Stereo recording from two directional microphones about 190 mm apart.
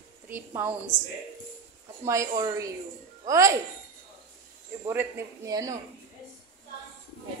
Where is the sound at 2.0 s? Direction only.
15° right (ahead or behind).